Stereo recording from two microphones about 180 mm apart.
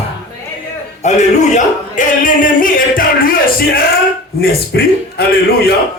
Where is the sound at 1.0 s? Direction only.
40° left (ahead or behind).